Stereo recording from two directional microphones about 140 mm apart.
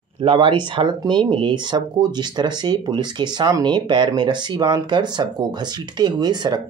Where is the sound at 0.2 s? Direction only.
40° right (ahead or behind).